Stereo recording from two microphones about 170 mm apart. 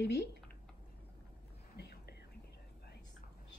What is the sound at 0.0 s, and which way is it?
Speech, 80° left.